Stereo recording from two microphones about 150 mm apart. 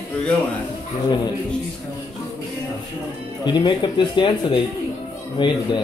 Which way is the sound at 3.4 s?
30° left (ahead or behind).